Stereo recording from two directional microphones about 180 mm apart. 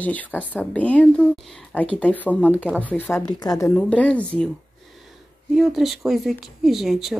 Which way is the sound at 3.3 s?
20° left (ahead or behind).